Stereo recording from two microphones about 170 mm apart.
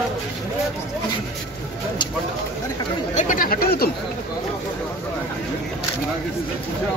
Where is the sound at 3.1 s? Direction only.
50° left (ahead or behind).